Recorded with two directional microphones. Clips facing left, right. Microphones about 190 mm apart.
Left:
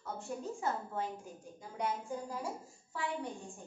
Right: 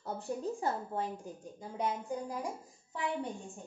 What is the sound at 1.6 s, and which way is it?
A woman's voice, 20° right (ahead or behind).